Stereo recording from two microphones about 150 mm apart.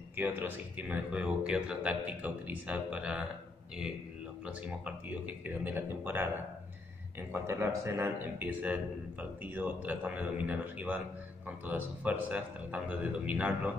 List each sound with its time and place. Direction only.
0.1 s speech: 10° right (ahead or behind)
4.5 s speech: 10° right (ahead or behind)
7.3 s speech: 15° right (ahead or behind)